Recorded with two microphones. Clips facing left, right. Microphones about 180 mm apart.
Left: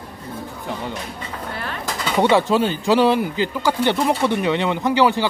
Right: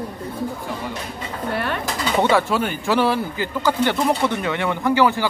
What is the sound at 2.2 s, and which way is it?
Speech, 20° left (ahead or behind).